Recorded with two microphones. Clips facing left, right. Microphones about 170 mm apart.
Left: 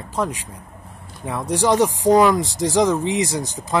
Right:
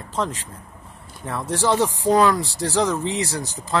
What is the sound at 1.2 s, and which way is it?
Speech, 15° left (ahead or behind).